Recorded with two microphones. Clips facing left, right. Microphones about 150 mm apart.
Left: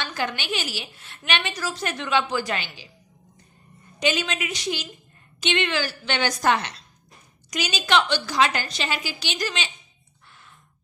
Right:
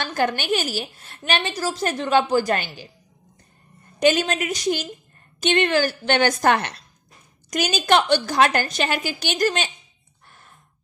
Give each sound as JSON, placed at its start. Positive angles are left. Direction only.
{"t": 0.0, "sound": "a woman's voice", "side_deg": -50}
{"t": 4.0, "sound": "a woman's voice", "side_deg": -45}